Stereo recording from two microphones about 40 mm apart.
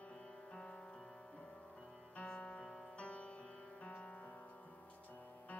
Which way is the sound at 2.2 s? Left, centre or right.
Left.